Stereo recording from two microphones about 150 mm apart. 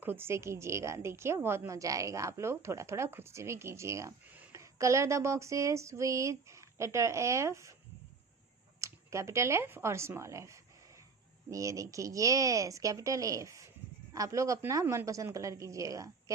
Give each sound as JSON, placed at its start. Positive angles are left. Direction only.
{"t": 0.0, "sound": "a woman's voice", "side_deg": -15}
{"t": 8.8, "sound": "a woman's voice", "side_deg": -20}